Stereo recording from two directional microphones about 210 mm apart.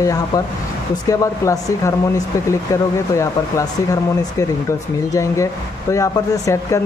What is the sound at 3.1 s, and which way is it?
Speech, 15° left (ahead or behind).